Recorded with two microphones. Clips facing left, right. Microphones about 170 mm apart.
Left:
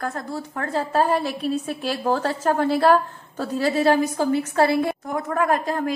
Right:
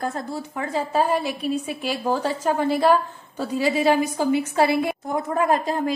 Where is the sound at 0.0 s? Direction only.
25° right (ahead or behind).